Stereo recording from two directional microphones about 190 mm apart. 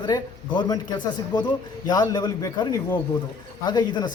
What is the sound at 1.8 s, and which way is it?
Speech, 20° left (ahead or behind).